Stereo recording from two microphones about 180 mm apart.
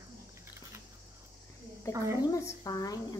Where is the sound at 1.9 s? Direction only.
15° right (ahead or behind).